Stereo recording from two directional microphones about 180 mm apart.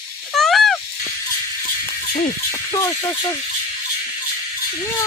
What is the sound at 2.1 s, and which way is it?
Music, 45° left (ahead or behind).